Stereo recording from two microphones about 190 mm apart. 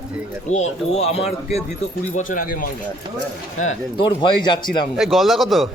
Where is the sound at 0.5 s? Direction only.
35° left (ahead or behind).